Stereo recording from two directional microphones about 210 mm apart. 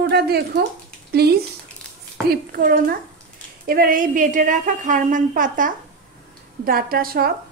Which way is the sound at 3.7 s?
40° right (ahead or behind).